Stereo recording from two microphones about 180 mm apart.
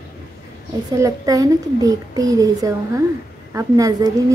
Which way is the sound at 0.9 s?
20° right (ahead or behind).